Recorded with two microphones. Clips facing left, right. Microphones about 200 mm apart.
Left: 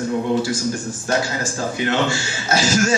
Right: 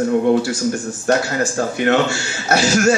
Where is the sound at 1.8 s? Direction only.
65° right (ahead or behind).